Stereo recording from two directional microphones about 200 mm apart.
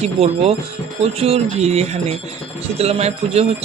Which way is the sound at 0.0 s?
30° right (ahead or behind).